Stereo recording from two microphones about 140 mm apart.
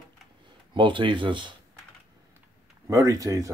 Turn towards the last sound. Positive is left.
turn(degrees=-25)  # may be behind; listen again after turning